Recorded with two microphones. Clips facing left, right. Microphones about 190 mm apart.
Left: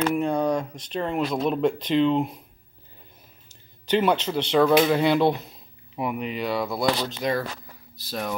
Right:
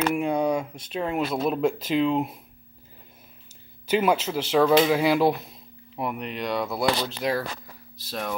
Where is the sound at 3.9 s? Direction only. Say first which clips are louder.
Left 1 dB; 5° right (ahead or behind).